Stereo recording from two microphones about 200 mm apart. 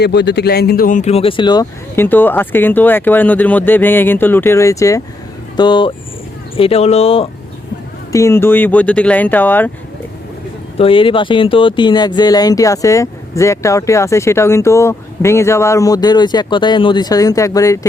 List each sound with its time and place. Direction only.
0.0 s speech: 55° left (ahead or behind); by 2.0 s 20° left (ahead or behind)
2.0 s speech: 10° left (ahead or behind); by 7.3 s 30° left (ahead or behind)
8.1 s speech: 15° left (ahead or behind)
10.8 s speech: 25° left (ahead or behind)